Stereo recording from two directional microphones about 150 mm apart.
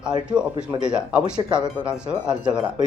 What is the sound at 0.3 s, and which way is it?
Speech, 5° right (ahead or behind).